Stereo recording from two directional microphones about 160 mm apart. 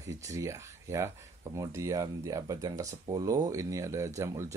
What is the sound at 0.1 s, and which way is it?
Speech, 20° right (ahead or behind).